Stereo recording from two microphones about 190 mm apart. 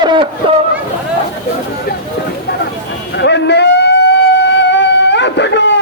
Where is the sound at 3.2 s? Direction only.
65° left (ahead or behind).